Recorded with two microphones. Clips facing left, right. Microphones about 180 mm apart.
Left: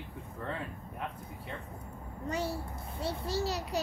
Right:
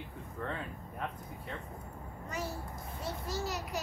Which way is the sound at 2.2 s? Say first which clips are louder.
Left 5 dB; 30° left (ahead or behind).